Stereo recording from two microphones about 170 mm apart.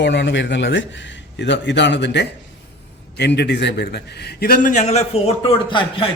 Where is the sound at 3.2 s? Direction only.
75° left (ahead or behind); by 6.1 s 30° left (ahead or behind).